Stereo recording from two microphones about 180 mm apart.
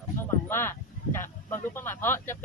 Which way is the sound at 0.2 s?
15° left (ahead or behind).